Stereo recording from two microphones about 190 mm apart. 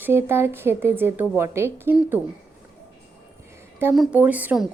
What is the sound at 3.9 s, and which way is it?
Speech, 5° right (ahead or behind).